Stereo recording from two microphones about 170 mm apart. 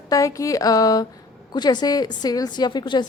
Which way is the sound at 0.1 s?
20° left (ahead or behind).